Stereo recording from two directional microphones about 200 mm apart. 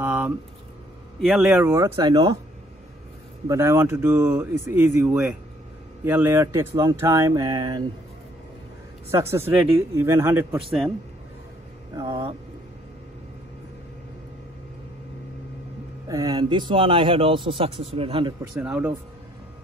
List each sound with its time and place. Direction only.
0.0 s a sound: 10° right (ahead or behind)
1.2 s speech: centre (ahead or behind); by 2.3 s 20° right (ahead or behind)
3.4 s speech: 15° right (ahead or behind)
9.1 s speech: 15° right (ahead or behind)
11.9 s speech: 20° right (ahead or behind)
16.1 s speech: 20° right (ahead or behind)
18.6 s speech: 10° right (ahead or behind)